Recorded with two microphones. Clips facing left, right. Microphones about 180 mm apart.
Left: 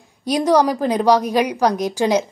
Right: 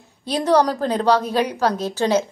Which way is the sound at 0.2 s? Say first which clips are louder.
Left 2 dB; 10° left (ahead or behind).